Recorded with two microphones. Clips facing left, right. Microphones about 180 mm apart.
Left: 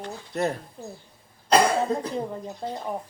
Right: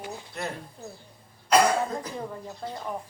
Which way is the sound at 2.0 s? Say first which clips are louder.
Left 5 dB; 20° left (ahead or behind).